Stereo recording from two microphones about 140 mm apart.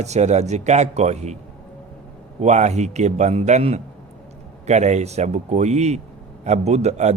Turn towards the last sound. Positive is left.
turn(degrees=-50)  # may be behind; listen again after turning